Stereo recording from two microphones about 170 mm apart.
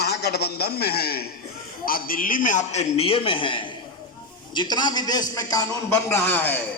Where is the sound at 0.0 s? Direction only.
75° left (ahead or behind).